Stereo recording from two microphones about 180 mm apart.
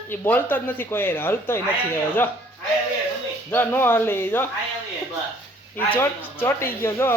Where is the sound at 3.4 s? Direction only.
10° left (ahead or behind).